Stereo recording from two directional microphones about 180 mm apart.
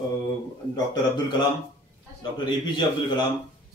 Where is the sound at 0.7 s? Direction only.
25° left (ahead or behind).